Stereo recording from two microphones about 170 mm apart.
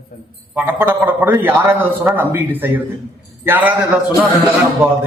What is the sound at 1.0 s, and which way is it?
A man's voice, 10° right (ahead or behind).